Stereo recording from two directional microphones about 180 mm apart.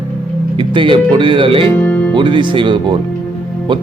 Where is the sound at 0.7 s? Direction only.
25° right (ahead or behind).